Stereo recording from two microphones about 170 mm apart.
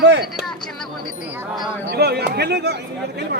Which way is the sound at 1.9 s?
75° right (ahead or behind).